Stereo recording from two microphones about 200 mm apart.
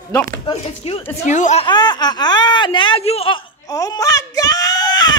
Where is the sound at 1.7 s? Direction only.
20° left (ahead or behind).